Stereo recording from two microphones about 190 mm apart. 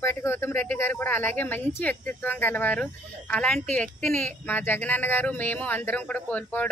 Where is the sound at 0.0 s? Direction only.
10° left (ahead or behind).